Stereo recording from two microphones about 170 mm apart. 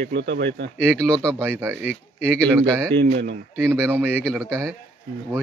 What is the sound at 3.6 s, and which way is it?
Speech, 15° right (ahead or behind).